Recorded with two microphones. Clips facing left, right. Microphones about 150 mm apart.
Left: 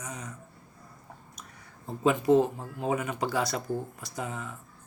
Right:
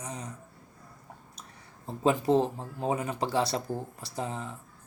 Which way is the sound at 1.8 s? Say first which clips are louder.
Left 1 dB; 30° right (ahead or behind).